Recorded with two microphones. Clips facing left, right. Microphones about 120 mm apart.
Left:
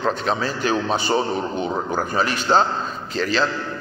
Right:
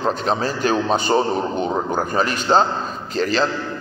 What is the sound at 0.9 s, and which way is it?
Speech, 40° right (ahead or behind).